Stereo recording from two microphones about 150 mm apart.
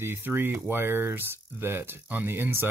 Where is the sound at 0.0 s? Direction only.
15° right (ahead or behind).